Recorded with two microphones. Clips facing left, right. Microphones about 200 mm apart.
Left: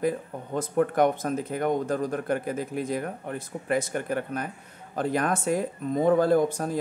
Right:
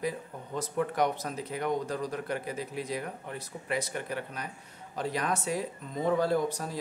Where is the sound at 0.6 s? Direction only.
50° left (ahead or behind).